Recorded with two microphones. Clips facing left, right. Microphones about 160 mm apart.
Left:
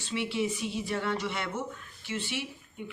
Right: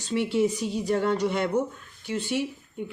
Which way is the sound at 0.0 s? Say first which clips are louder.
Right 7 dB; 40° right (ahead or behind).